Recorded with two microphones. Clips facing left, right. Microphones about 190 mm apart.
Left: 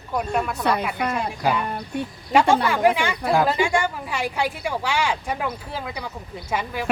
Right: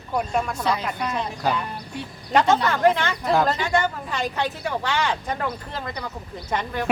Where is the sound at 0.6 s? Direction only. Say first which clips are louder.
Left 2 dB; 60° left (ahead or behind).